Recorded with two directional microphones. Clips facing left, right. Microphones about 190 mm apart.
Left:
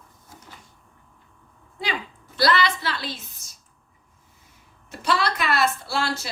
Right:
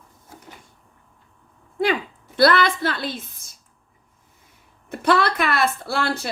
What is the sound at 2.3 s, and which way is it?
A woman's voice, 55° right (ahead or behind).